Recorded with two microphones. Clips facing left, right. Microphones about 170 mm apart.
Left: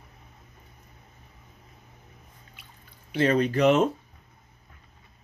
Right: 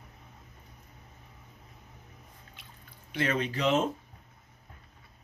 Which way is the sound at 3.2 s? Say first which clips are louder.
Left 8 dB; 40° left (ahead or behind).